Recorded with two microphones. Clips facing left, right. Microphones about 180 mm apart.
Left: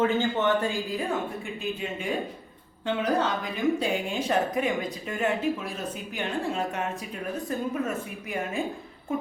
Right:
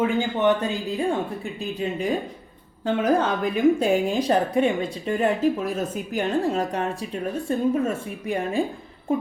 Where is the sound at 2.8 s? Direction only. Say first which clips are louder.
Right 5 dB; 50° right (ahead or behind).